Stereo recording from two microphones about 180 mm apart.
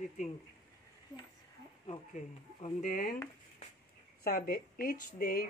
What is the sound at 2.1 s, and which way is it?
Speech, 45° left (ahead or behind).